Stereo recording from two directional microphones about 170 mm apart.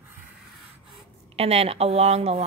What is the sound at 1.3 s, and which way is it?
A woman's voice, 35° right (ahead or behind).